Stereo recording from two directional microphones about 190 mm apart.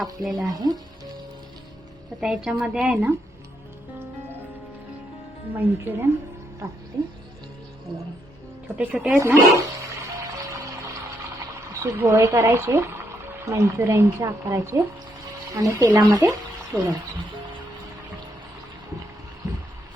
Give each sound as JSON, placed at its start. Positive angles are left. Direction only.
{"t": 0.0, "sound": "speech", "side_deg": 0}
{"t": 0.4, "sound": "speech", "side_deg": -20}
{"t": 2.2, "sound": "speech", "side_deg": -5}
{"t": 5.5, "sound": "speech", "side_deg": -10}
{"t": 8.8, "sound": "speech", "side_deg": -5}
{"t": 9.1, "sound": "music", "side_deg": -15}
{"t": 11.8, "sound": "speech", "side_deg": -15}